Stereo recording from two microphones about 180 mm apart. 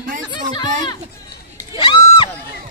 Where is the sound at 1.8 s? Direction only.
25° left (ahead or behind).